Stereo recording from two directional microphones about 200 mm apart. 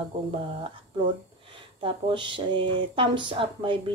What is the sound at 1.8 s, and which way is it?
Speech, 25° right (ahead or behind).